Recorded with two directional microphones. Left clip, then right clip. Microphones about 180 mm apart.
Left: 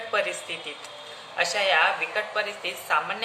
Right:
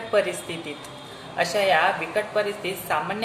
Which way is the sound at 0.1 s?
10° left (ahead or behind).